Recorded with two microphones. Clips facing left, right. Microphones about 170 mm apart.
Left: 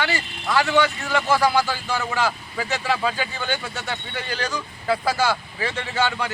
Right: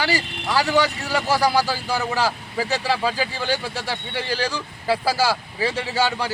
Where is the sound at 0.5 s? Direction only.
35° right (ahead or behind).